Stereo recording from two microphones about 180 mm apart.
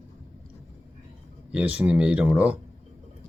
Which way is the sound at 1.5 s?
5° right (ahead or behind).